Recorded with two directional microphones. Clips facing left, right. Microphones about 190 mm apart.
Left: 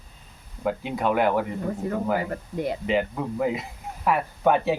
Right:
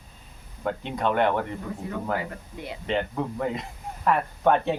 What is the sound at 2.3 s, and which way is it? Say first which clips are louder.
Speech: left 9 dB; 45° left (ahead or behind).